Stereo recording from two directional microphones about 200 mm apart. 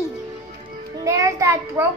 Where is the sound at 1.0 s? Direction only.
15° right (ahead or behind).